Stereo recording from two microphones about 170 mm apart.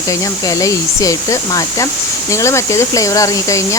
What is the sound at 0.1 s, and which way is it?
Speech, 20° left (ahead or behind).